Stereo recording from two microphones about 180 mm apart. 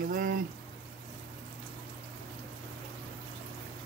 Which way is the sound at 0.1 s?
50° right (ahead or behind).